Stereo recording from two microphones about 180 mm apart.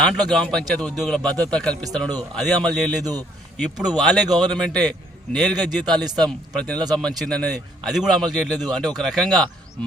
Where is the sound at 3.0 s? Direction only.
20° right (ahead or behind).